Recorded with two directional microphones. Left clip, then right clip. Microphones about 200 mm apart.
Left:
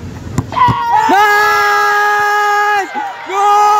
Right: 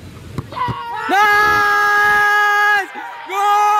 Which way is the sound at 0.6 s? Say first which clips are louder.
Left 12 dB; 35° left (ahead or behind).